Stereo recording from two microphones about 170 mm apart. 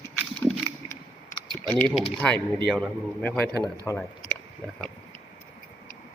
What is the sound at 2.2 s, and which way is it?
A man's voice, 5° left (ahead or behind).